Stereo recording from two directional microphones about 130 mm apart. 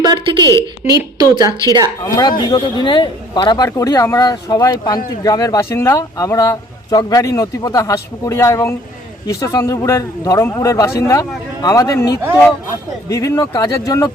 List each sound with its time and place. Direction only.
0.0 s a woman's voice: 35° right (ahead or behind)
2.4 s speech: 35° left (ahead or behind)